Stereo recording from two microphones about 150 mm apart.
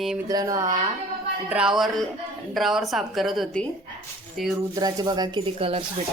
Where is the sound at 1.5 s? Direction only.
5° right (ahead or behind).